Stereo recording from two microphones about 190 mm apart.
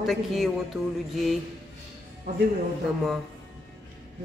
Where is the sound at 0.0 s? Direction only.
Centre (ahead or behind).